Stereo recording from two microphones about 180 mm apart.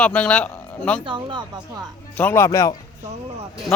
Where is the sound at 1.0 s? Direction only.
25° right (ahead or behind).